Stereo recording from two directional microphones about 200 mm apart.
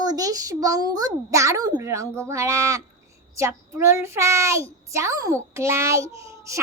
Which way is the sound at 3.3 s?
10° right (ahead or behind).